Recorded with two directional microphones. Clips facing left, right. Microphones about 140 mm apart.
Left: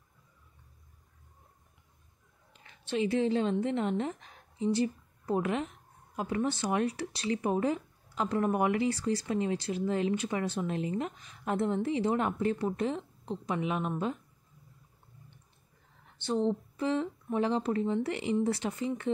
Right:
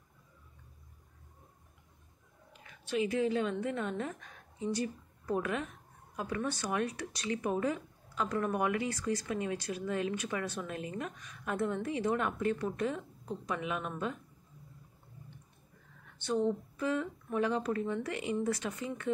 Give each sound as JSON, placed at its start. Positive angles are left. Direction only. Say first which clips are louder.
{"t": 2.6, "sound": "a woman's voice", "louder": "left 2 dB", "side_deg": 30}
{"t": 16.2, "sound": "speech", "louder": "left 2 dB", "side_deg": 30}